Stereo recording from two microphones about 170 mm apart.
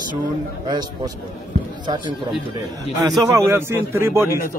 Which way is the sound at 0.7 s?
25° right (ahead or behind).